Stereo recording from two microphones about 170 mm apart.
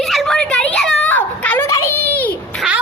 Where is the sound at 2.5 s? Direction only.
5° right (ahead or behind).